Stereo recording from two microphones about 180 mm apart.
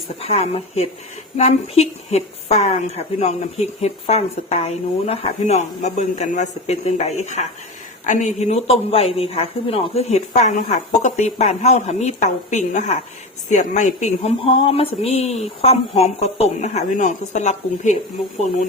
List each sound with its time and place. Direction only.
0.2 s speech: 35° left (ahead or behind)